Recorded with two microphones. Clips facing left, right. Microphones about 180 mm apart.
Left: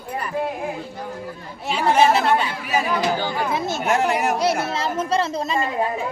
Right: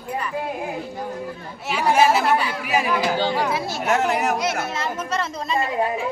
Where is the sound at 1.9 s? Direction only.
5° right (ahead or behind).